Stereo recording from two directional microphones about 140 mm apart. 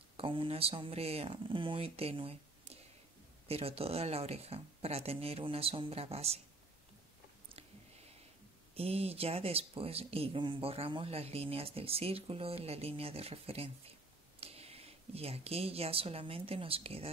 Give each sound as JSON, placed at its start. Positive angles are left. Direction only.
{"t": 0.2, "sound": "speech", "side_deg": -40}
{"t": 7.4, "sound": "a sound", "side_deg": -45}
{"t": 8.7, "sound": "speech", "side_deg": -45}